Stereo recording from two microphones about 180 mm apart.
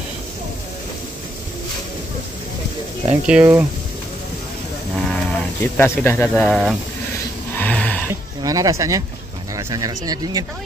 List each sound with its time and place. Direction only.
3.1 s speech: 10° right (ahead or behind)
4.9 s sheep: centre (ahead or behind)
5.8 s speech: 10° left (ahead or behind)
7.5 s a sound: 5° left (ahead or behind)
8.1 s speech: 20° right (ahead or behind)